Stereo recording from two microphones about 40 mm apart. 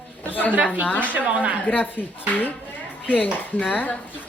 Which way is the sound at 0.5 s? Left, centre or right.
Right.